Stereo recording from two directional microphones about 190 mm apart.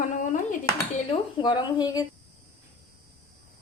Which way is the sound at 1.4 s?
25° left (ahead or behind).